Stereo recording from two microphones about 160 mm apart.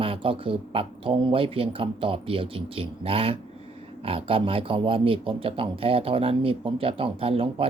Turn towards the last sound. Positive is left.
turn(degrees=-35)  # may be behind; listen again after turning